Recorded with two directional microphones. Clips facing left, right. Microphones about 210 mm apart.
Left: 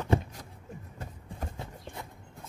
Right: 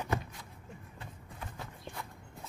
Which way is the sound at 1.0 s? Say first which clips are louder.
Left 7 dB; 45° left (ahead or behind).